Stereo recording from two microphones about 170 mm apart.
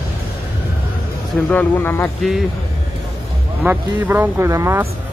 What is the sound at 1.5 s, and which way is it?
Speech, 10° left (ahead or behind).